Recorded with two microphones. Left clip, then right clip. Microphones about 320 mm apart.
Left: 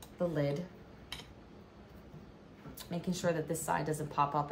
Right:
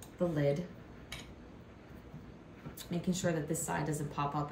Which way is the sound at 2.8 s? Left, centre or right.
Centre.